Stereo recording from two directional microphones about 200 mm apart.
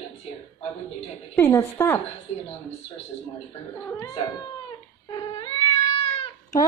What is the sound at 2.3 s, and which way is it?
Speech, 30° left (ahead or behind).